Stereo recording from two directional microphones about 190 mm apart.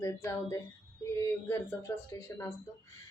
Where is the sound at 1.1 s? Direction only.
15° left (ahead or behind).